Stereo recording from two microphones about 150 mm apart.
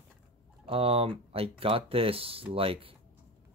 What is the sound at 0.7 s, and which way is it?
Speech, 40° right (ahead or behind).